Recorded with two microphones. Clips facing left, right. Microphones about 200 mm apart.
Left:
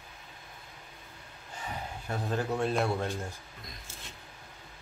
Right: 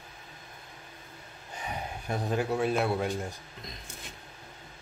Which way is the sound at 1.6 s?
15° right (ahead or behind).